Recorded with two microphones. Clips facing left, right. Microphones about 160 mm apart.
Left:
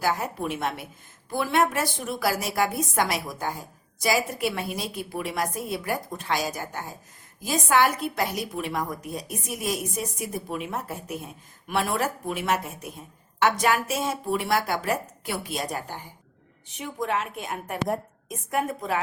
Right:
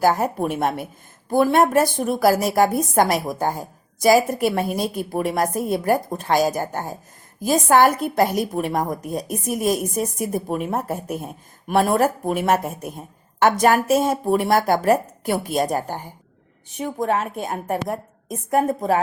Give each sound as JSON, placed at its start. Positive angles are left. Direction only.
{"t": 0.0, "sound": "a woman's voice", "side_deg": -45}